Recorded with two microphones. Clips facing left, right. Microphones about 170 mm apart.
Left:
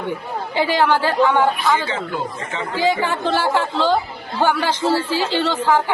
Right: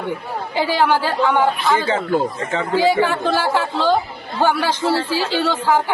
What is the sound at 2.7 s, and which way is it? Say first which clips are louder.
Speech: right 3 dB; 10° right (ahead or behind).